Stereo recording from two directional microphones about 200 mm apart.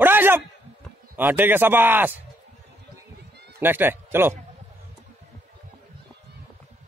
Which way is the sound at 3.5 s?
10° right (ahead or behind).